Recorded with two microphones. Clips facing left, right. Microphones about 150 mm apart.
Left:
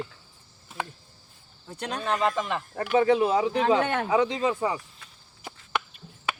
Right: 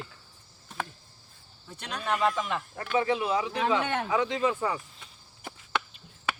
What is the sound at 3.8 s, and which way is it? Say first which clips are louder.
Speech: left 4 dB; 50° left (ahead or behind).